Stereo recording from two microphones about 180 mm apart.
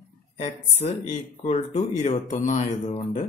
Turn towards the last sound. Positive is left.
turn(degrees=40)  # may be behind; listen again after turning